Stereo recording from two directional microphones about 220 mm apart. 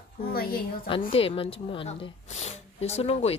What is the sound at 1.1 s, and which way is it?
Speech, 25° left (ahead or behind).